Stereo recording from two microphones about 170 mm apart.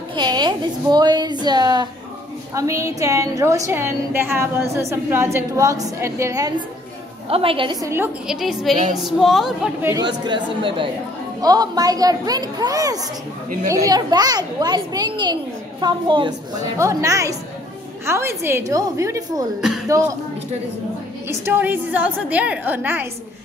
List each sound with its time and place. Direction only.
0.1 s a woman's voice: 25° right (ahead or behind)
7.2 s a woman's voice: 35° right (ahead or behind)
7.8 s a woman's voice: 15° right (ahead or behind)
8.3 s speech: centre (ahead or behind)
10.2 s a woman's voice: 30° right (ahead or behind)
21.3 s a woman's voice: 15° right (ahead or behind)